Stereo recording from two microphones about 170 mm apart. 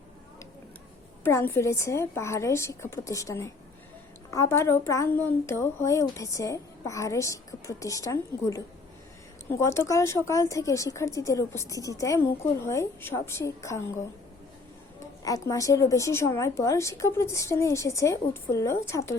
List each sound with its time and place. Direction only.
1.2 s speech: 15° left (ahead or behind)
15.2 s speech: 20° left (ahead or behind)